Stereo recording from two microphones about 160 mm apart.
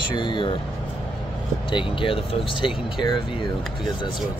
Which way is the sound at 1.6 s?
30° left (ahead or behind).